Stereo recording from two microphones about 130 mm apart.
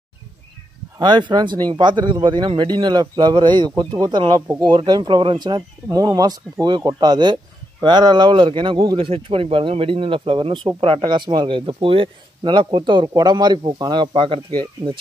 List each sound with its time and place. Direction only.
0.9 s speech: 35° right (ahead or behind)